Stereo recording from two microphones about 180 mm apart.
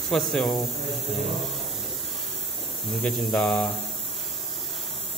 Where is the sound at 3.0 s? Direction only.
Centre (ahead or behind).